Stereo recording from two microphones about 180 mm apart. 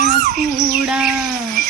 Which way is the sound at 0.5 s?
Centre (ahead or behind).